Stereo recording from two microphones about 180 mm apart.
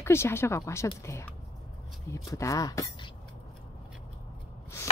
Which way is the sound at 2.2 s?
20° left (ahead or behind).